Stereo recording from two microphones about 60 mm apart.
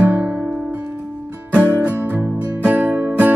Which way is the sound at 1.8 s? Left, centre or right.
Right.